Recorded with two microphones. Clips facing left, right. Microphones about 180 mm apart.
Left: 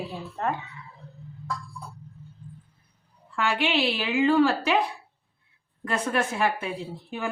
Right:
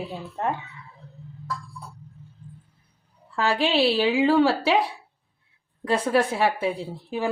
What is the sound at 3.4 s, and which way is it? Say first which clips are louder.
A woman's voice: right 4 dB; 35° right (ahead or behind).